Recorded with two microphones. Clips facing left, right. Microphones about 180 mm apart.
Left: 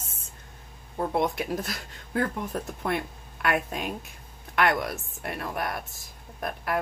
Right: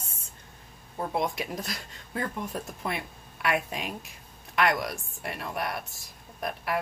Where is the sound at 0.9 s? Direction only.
Centre (ahead or behind).